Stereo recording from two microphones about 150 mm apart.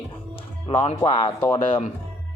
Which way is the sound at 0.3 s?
40° left (ahead or behind).